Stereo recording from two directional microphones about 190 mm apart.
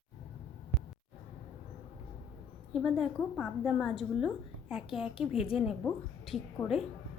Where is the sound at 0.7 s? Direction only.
10° right (ahead or behind).